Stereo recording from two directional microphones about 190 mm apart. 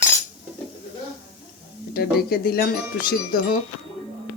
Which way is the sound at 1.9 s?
55° left (ahead or behind).